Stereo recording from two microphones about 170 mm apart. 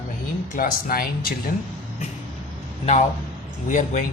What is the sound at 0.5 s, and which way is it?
Speech, 60° left (ahead or behind).